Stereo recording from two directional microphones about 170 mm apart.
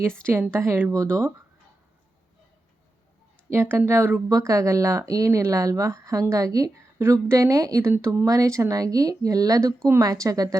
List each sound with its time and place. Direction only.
0.3 s speech: 15° right (ahead or behind)
3.5 s speech: 15° right (ahead or behind)